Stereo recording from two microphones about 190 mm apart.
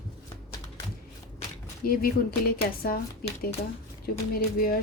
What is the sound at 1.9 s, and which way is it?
Speech, 50° left (ahead or behind).